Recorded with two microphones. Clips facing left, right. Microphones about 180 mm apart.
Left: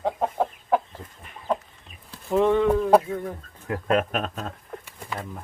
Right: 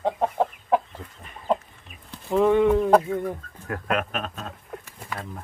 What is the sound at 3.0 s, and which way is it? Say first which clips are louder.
Speech: right 3 dB; 15° right (ahead or behind).